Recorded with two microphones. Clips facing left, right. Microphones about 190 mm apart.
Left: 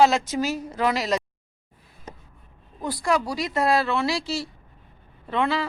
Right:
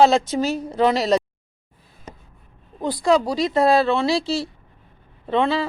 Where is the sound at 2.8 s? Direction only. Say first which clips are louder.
Right 6 dB; 25° right (ahead or behind).